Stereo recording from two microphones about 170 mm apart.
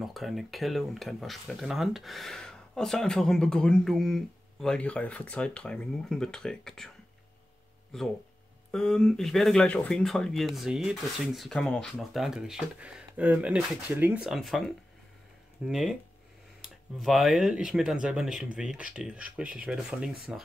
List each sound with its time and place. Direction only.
0.0 s speech: centre (ahead or behind)
8.7 s speech: 5° left (ahead or behind)
15.6 s speech: 5° right (ahead or behind)
17.0 s speech: centre (ahead or behind)